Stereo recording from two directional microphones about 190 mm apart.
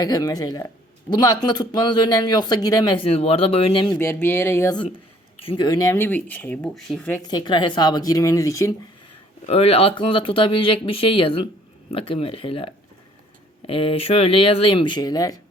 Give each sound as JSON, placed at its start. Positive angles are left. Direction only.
{"t": 0.0, "sound": "speech", "side_deg": 20}
{"t": 3.8, "sound": "speech", "side_deg": 10}
{"t": 5.5, "sound": "speech", "side_deg": 25}
{"t": 7.2, "sound": "speech", "side_deg": 20}
{"t": 9.5, "sound": "speech", "side_deg": 30}